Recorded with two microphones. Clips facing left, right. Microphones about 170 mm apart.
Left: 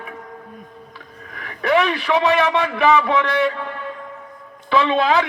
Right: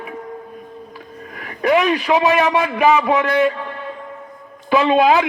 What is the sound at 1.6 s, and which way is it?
A man's voice, 10° right (ahead or behind).